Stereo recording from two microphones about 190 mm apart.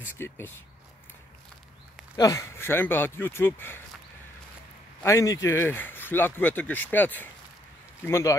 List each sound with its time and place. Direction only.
0.2 s speech: 15° left (ahead or behind)
2.1 s speech: 15° left (ahead or behind)
5.0 s speech: 15° left (ahead or behind)